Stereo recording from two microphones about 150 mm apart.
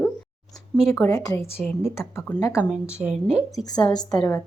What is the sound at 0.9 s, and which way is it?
Speech, 15° left (ahead or behind).